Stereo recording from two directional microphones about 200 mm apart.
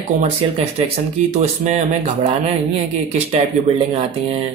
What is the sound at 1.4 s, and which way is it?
Speech, 35° right (ahead or behind).